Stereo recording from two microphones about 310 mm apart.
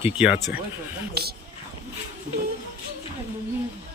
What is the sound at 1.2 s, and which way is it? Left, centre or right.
Speech, right.